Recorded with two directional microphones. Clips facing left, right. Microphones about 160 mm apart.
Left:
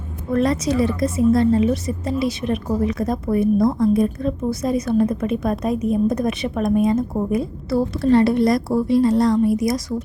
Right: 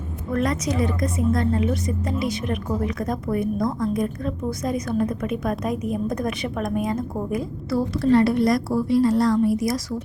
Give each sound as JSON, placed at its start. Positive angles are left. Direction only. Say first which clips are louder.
{"t": 0.3, "sound": "a woman's voice", "louder": "left 5 dB", "side_deg": 30}